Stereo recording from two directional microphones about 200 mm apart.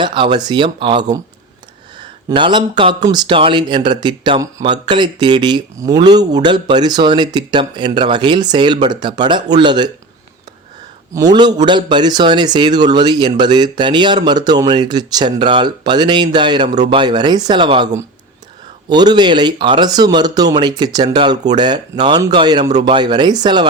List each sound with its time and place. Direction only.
0.0 s speech: 25° right (ahead or behind)
2.3 s speech: 25° right (ahead or behind)
11.3 s speech: 20° right (ahead or behind)
18.9 s speech: 20° right (ahead or behind)